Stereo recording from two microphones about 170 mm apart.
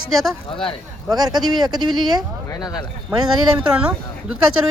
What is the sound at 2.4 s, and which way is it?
Speech, 20° left (ahead or behind).